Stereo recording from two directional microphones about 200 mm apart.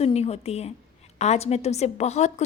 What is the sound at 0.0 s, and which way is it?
A woman's voice, 30° left (ahead or behind).